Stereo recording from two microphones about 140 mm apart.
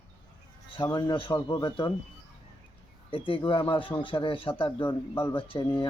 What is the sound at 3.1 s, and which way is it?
Speech, 40° left (ahead or behind).